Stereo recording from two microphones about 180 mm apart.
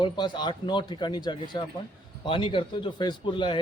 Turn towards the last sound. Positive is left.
turn(degrees=25)  # may be behind; listen again after turning